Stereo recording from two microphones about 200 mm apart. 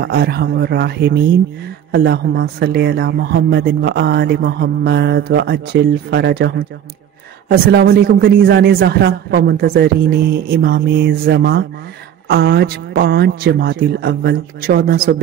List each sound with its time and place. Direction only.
0.0 s speech: 55° right (ahead or behind)